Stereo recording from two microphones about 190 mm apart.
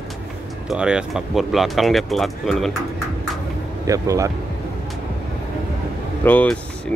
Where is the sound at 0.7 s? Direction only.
5° right (ahead or behind).